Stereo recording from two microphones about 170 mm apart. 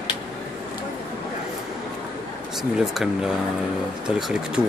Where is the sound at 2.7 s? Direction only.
5° right (ahead or behind).